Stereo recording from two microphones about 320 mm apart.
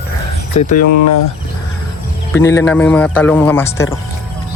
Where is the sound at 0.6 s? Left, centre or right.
Left.